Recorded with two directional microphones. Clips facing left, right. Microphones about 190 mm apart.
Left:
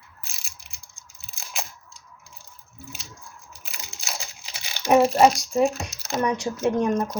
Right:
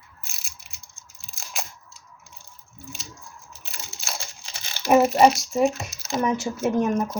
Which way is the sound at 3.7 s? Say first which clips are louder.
Even; centre (ahead or behind).